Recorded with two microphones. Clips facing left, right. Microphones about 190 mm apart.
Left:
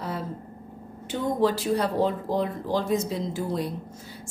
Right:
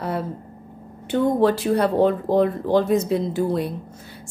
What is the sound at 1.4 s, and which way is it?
A woman's voice, 60° right (ahead or behind).